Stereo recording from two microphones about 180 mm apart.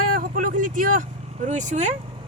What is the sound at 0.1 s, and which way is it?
Vehicle, 50° right (ahead or behind).